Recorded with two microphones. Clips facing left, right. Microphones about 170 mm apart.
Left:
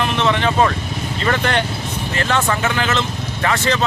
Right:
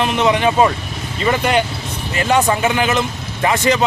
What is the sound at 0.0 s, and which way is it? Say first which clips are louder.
Speech: right 3 dB; 15° right (ahead or behind).